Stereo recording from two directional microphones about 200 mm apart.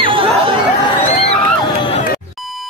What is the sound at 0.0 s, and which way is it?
Chatter, 25° right (ahead or behind).